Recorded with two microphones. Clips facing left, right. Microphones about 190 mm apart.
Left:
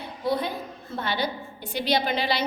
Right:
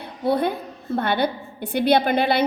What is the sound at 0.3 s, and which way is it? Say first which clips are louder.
A woman's voice: right 5 dB; 60° right (ahead or behind).